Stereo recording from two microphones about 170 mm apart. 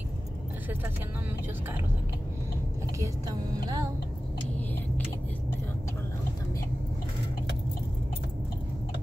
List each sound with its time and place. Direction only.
3.0 s music: 20° right (ahead or behind)